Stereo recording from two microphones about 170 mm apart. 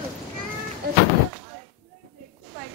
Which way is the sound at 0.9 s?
70° right (ahead or behind).